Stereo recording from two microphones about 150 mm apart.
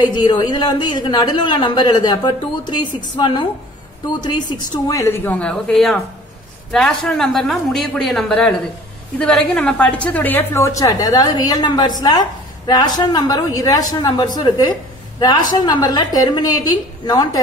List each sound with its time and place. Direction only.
0.1 s a woman's voice: 30° left (ahead or behind)